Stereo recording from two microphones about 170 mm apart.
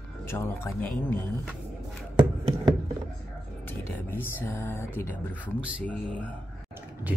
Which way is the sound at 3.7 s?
10° left (ahead or behind).